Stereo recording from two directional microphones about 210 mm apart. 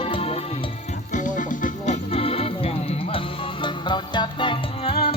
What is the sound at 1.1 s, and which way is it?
Music, 40° left (ahead or behind).